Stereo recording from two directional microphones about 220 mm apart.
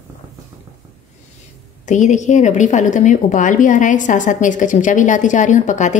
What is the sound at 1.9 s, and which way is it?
A woman's voice, 35° left (ahead or behind).